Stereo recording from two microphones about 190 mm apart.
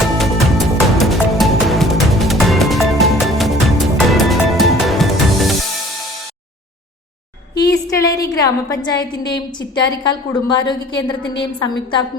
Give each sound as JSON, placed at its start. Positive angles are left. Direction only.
{"t": 0.0, "sound": "music", "side_deg": 0}
{"t": 7.5, "sound": "a woman's voice", "side_deg": 20}